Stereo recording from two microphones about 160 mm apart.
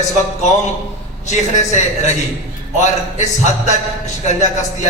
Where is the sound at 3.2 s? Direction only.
45° left (ahead or behind).